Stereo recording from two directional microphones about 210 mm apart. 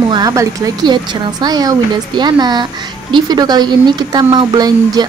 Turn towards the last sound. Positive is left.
turn(degrees=-20)  # may be behind; listen again after turning